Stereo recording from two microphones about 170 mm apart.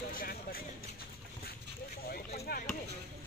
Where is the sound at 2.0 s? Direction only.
65° left (ahead or behind).